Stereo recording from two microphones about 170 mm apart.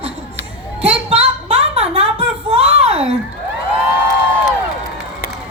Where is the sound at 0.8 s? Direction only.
35° right (ahead or behind).